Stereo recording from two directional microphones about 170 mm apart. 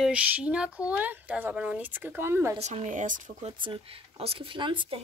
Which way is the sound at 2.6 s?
45° right (ahead or behind).